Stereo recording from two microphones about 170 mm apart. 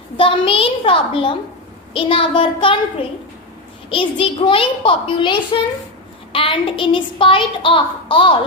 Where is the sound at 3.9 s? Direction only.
30° left (ahead or behind).